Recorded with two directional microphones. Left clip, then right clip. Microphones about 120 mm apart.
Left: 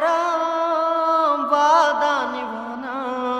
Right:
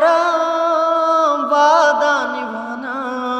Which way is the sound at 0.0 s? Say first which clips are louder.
Right 6 dB; 40° right (ahead or behind).